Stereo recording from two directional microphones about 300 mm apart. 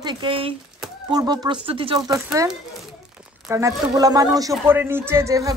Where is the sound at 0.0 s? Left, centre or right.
Centre.